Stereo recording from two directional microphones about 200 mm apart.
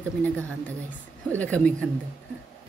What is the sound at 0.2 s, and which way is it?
A woman's voice, 10° left (ahead or behind).